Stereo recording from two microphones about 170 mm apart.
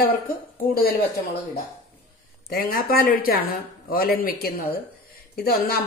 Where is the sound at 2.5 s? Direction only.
60° left (ahead or behind).